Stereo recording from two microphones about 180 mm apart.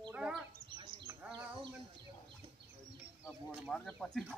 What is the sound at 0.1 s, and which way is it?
Bird, 5° right (ahead or behind).